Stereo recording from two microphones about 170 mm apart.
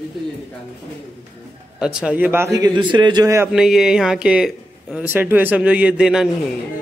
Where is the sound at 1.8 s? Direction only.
5° right (ahead or behind); by 3.4 s 20° right (ahead or behind).